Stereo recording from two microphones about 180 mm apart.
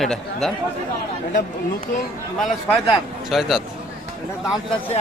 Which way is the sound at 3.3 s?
Centre (ahead or behind).